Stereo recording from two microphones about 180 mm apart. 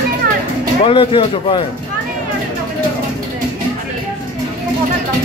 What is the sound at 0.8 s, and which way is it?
Speech, 30° left (ahead or behind).